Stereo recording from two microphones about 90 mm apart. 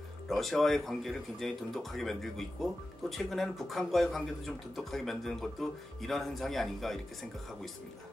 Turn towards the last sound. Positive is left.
turn(degrees=0)  # may be behind; listen again after turning